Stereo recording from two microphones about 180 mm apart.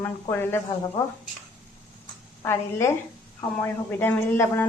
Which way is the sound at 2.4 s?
15° left (ahead or behind).